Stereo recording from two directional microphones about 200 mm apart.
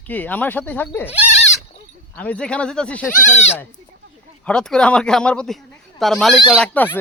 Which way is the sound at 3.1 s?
40° left (ahead or behind).